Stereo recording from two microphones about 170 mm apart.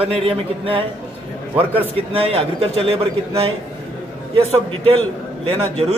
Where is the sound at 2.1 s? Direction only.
35° right (ahead or behind).